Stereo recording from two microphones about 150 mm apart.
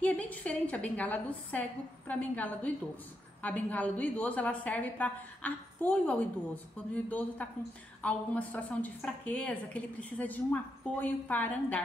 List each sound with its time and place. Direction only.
0.0 s a woman's voice: 10° left (ahead or behind)